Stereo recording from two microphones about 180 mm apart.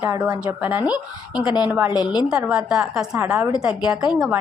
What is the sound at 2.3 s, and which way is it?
A woman's voice, 5° right (ahead or behind).